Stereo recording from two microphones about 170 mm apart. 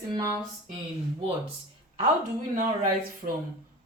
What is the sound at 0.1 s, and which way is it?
Speech, 20° right (ahead or behind).